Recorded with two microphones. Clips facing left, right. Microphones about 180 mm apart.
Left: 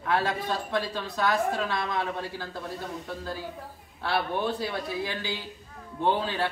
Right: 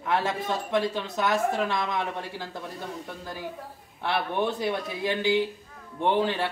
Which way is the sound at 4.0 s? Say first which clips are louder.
Right 1 dB; 20° right (ahead or behind).